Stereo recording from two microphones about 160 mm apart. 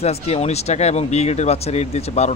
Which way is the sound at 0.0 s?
40° left (ahead or behind).